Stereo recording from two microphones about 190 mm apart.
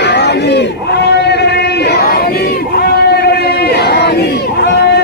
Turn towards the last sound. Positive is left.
turn(degrees=55)  # may be behind; listen again after turning